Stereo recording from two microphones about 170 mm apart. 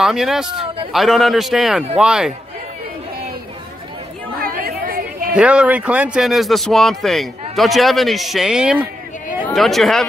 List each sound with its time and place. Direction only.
0.0 s speech: centre (ahead or behind)
4.4 s chatter: 60° right (ahead or behind)
5.3 s speech: 5° right (ahead or behind)